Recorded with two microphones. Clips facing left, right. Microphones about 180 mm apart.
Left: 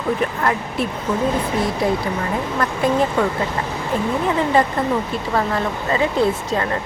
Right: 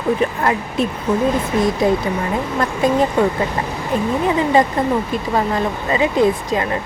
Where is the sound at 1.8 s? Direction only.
20° right (ahead or behind).